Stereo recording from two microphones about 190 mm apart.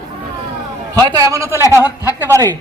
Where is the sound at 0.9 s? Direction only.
20° right (ahead or behind).